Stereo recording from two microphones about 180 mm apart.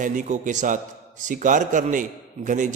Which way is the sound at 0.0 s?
45° right (ahead or behind).